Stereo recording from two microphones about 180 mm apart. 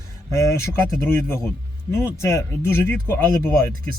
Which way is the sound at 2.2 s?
15° left (ahead or behind).